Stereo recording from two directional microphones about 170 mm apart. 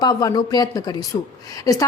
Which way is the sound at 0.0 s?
20° left (ahead or behind).